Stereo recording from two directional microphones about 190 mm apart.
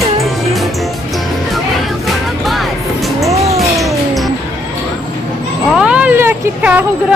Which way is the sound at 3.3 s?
15° right (ahead or behind).